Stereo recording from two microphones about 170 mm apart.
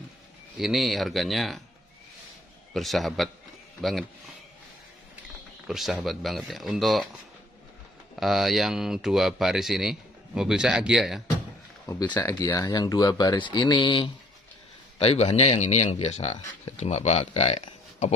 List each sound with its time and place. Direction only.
0.6 s speech: centre (ahead or behind)
2.7 s speech: centre (ahead or behind)
5.7 s speech: centre (ahead or behind)
8.2 s speech: centre (ahead or behind)
11.8 s speech: 15° left (ahead or behind); by 18.1 s 40° left (ahead or behind)